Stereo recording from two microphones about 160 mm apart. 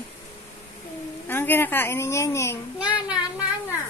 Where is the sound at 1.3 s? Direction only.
15° left (ahead or behind).